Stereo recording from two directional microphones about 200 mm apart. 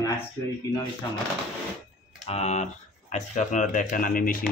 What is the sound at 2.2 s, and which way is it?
Speech, 35° left (ahead or behind).